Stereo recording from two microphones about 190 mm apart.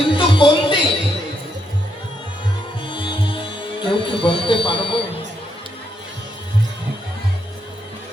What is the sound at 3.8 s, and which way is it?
Speech, 25° left (ahead or behind).